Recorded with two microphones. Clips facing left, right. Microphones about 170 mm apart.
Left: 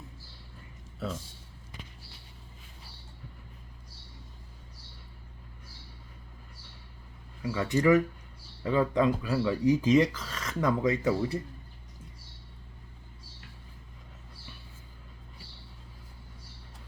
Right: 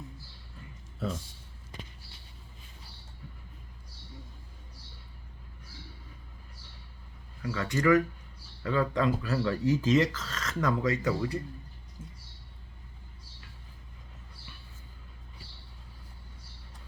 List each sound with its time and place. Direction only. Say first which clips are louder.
7.4 s speech: left 2 dB; 20° left (ahead or behind)